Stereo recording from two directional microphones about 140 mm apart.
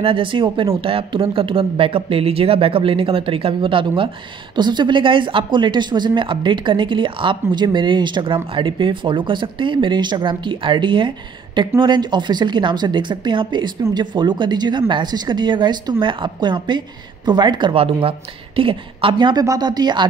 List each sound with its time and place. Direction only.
0.0 s speech: 40° right (ahead or behind)